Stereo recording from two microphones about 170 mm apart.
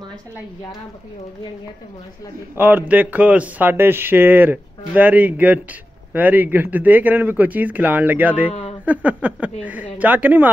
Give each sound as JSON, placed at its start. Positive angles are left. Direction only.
{"t": 2.5, "sound": "speech", "side_deg": -10}
{"t": 8.5, "sound": "speech", "side_deg": 35}
{"t": 8.8, "sound": "speech", "side_deg": -10}